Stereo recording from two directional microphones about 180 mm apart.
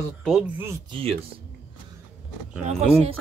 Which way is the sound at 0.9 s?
30° right (ahead or behind).